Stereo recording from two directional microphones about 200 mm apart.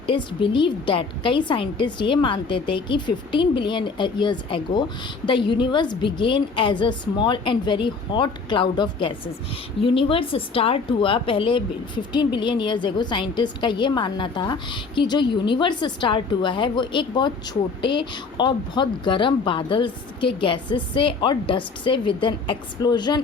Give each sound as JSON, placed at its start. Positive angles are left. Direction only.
{"t": 0.0, "sound": "a woman's voice", "side_deg": 25}